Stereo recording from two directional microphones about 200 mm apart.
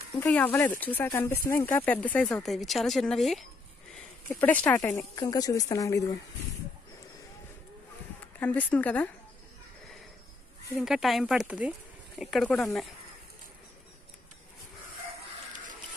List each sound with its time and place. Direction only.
0.2 s speech: 10° left (ahead or behind)
8.4 s speech: 10° left (ahead or behind)
10.8 s speech: centre (ahead or behind)